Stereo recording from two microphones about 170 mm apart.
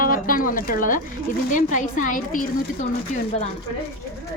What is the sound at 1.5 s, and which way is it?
A woman's voice, 50° left (ahead or behind).